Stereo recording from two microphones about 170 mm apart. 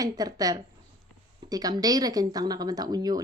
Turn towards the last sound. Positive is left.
turn(degrees=-25)  # may be behind; listen again after turning